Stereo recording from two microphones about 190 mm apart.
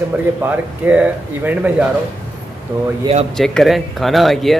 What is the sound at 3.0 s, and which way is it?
Speech, 30° right (ahead or behind).